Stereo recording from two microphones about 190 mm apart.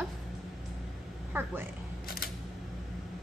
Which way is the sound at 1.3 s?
10° right (ahead or behind).